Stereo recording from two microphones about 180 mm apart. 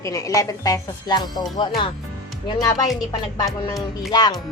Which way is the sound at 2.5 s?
20° left (ahead or behind).